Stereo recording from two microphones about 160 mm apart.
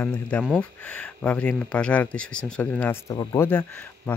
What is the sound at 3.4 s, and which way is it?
Speech, 10° left (ahead or behind).